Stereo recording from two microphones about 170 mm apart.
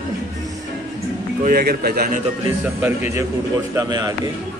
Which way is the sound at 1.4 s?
60° right (ahead or behind).